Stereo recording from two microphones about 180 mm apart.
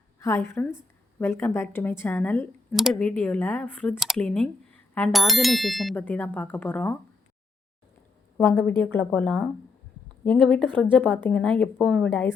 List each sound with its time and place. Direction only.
0.2 s speech: 15° left (ahead or behind)
2.7 s speech: centre (ahead or behind)
8.4 s speech: 10° left (ahead or behind)